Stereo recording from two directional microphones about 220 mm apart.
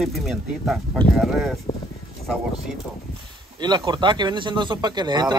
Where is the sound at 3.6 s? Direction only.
20° right (ahead or behind).